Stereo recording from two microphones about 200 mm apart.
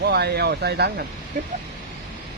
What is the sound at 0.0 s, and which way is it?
Speech, 55° right (ahead or behind).